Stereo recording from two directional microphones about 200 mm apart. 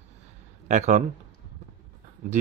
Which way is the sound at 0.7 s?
35° right (ahead or behind).